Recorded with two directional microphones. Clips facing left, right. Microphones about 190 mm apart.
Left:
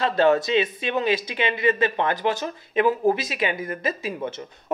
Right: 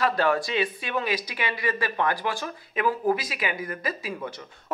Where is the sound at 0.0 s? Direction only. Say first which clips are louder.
Left 4 dB; 25° left (ahead or behind).